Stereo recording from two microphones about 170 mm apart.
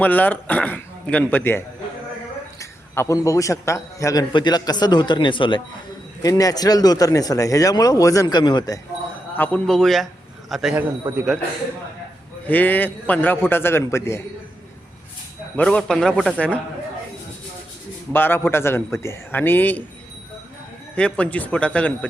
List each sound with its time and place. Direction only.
0.0 s a man's voice: 10° left (ahead or behind)
9.4 s a man's voice: 5° left (ahead or behind)
11.1 s a man's voice: 15° right (ahead or behind)
12.5 s a man's voice: 10° left (ahead or behind)
15.5 s a man's voice: 5° left (ahead or behind)
18.1 s a man's voice: 10° left (ahead or behind)
20.9 s a man's voice: 5° left (ahead or behind)